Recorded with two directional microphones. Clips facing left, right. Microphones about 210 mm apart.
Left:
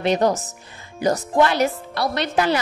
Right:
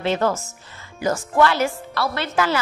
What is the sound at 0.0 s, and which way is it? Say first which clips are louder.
A woman's voice: left 2 dB; 15° left (ahead or behind).